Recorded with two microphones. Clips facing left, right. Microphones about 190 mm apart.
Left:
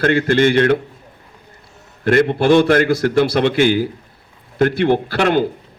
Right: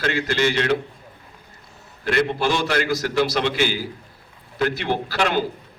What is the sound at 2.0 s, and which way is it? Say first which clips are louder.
A man's voice: left 8 dB; 50° left (ahead or behind).